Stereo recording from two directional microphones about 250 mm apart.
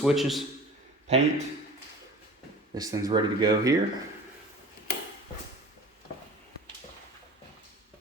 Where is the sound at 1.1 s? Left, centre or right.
Right.